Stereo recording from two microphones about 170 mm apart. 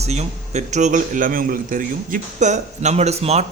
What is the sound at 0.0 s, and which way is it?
A man's voice, 40° right (ahead or behind).